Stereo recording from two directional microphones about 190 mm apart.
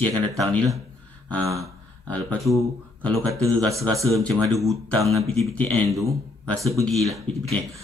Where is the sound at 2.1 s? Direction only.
5° left (ahead or behind).